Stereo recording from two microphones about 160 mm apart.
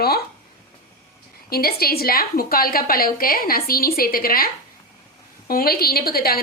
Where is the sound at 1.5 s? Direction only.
70° left (ahead or behind).